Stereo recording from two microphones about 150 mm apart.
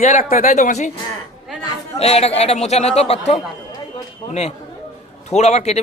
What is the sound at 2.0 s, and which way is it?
Speech, 45° left (ahead or behind).